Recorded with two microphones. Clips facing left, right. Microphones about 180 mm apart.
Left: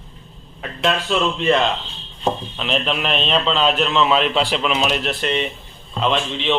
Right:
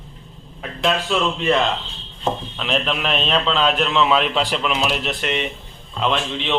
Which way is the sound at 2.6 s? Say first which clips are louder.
Left 1 dB; centre (ahead or behind).